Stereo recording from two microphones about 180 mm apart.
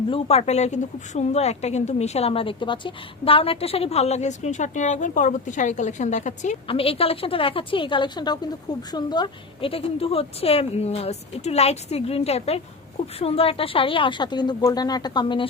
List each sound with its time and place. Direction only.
0.1 s a woman's voice: 35° left (ahead or behind)